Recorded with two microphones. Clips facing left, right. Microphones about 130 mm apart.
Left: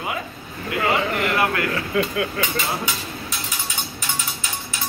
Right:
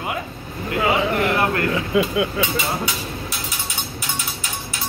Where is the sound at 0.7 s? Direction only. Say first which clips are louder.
Right 2 dB; 10° right (ahead or behind).